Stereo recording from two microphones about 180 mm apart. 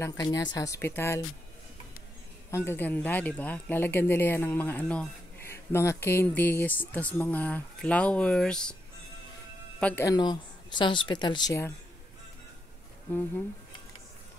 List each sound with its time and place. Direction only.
0.0 s speech: 20° left (ahead or behind)
2.5 s speech: 15° left (ahead or behind)
9.8 s speech: 5° left (ahead or behind)
10.0 s speech: 25° left (ahead or behind)